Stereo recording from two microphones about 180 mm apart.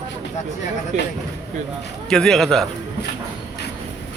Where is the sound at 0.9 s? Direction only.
40° right (ahead or behind).